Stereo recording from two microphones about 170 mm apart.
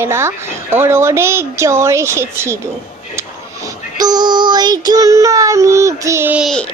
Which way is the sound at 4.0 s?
25° right (ahead or behind).